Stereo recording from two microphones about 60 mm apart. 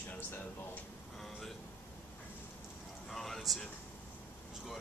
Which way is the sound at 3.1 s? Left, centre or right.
Centre.